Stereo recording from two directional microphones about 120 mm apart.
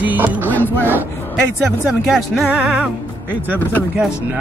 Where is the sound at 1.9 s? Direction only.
5° right (ahead or behind).